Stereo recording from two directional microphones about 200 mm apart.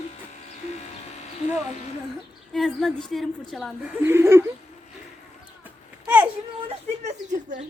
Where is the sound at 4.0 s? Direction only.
10° right (ahead or behind).